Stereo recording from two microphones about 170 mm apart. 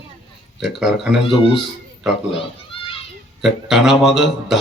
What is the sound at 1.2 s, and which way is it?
Speech, 30° left (ahead or behind).